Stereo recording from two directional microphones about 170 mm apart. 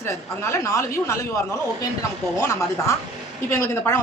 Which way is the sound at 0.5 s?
15° left (ahead or behind).